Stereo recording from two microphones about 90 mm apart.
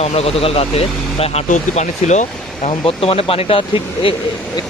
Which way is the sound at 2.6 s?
90° left.